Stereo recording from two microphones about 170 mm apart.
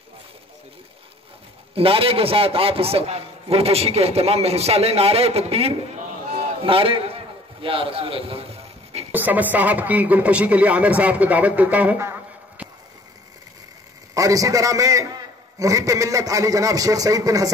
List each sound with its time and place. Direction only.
1.8 s a man's voice: 35° right (ahead or behind)
9.1 s speech: 10° right (ahead or behind)
14.1 s a man's voice: 20° right (ahead or behind)